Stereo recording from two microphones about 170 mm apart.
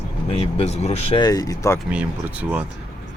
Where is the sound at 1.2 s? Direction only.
20° left (ahead or behind).